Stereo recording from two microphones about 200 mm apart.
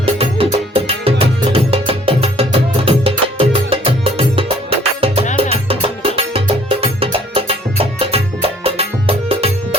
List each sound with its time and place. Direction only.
0.0 s music: 30° right (ahead or behind)